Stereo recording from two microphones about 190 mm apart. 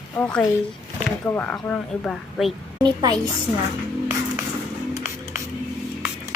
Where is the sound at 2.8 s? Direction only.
20° right (ahead or behind).